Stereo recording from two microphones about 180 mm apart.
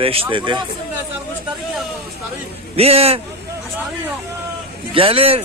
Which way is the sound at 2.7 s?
35° right (ahead or behind).